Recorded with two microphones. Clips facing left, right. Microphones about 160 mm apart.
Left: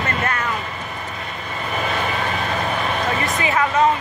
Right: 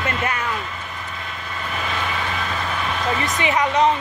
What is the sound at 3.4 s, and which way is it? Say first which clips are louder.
Speech: even; 20° right (ahead or behind).